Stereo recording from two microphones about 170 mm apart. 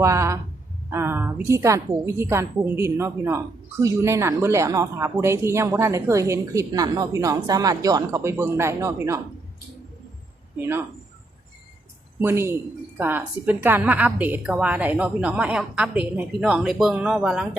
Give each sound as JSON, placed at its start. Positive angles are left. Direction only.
{"t": 0.0, "sound": "a woman's voice", "side_deg": -15}
{"t": 10.6, "sound": "a woman's voice", "side_deg": -15}
{"t": 12.2, "sound": "a woman's voice", "side_deg": -15}